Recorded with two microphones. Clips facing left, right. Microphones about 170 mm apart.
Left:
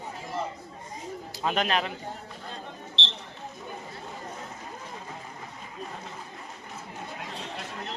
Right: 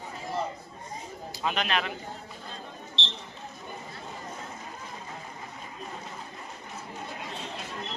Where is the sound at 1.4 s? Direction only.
40° left (ahead or behind).